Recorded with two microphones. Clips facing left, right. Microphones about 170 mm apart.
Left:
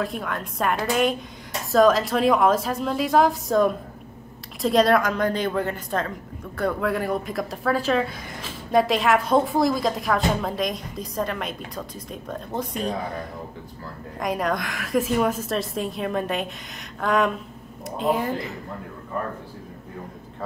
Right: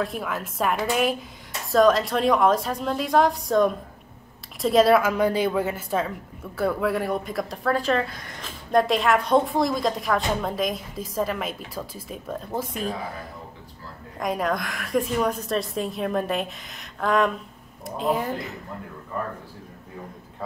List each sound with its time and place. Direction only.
0.0 s speech: centre (ahead or behind)
14.2 s speech: centre (ahead or behind)